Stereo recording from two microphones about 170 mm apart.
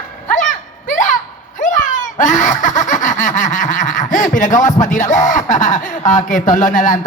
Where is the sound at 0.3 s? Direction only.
50° left (ahead or behind).